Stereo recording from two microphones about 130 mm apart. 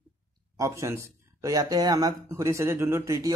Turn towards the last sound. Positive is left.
turn(degrees=-25)  # may be behind; listen again after turning